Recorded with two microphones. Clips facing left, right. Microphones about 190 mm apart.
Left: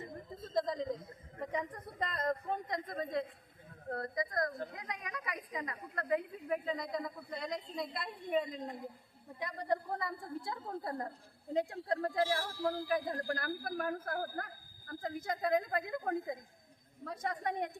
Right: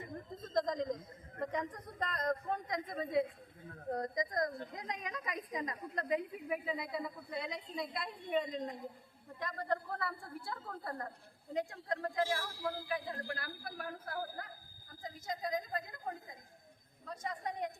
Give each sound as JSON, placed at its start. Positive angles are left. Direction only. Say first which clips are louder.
{"t": 0.5, "sound": "a sound", "louder": "even", "side_deg": 5}
{"t": 1.4, "sound": "a man's voice", "louder": "even", "side_deg": 10}
{"t": 3.8, "sound": "a woman's voice", "louder": "right 1 dB", "side_deg": -15}
{"t": 14.8, "sound": "a woman's voice", "louder": "left 5 dB", "side_deg": 60}